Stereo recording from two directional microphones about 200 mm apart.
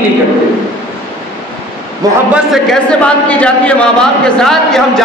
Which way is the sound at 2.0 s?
20° right (ahead or behind).